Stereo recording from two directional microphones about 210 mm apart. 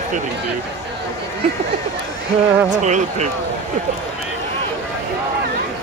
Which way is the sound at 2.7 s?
35° right (ahead or behind).